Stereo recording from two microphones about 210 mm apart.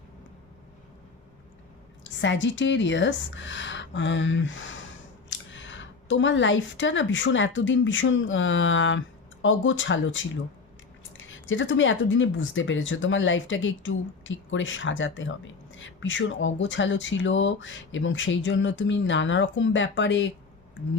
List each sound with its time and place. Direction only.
2.2 s speech: 60° left (ahead or behind)